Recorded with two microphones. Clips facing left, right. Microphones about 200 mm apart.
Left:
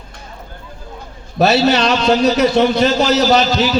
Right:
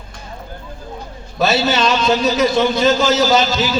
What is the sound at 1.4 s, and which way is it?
A man's voice, 65° left (ahead or behind).